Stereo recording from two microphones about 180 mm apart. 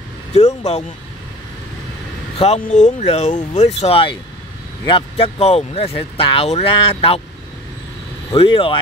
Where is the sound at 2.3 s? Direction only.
35° left (ahead or behind).